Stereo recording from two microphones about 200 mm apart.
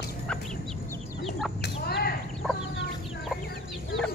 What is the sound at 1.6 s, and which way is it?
Chicken, 55° left (ahead or behind).